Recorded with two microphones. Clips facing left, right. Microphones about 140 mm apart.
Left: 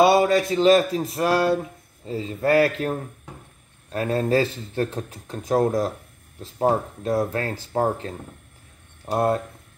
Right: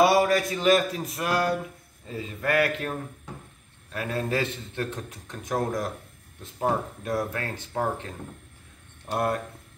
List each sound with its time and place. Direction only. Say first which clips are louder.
0.0 s speech: left 3 dB; 25° left (ahead or behind)
3.9 s speech: left 7 dB; 35° left (ahead or behind)